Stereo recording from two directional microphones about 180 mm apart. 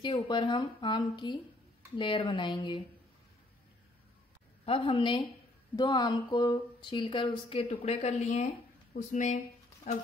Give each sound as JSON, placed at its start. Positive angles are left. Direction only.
{"t": 0.0, "sound": "speech", "side_deg": 25}
{"t": 4.6, "sound": "speech", "side_deg": 30}